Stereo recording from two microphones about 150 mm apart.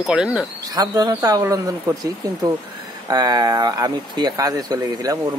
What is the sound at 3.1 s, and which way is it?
Speech, 25° right (ahead or behind).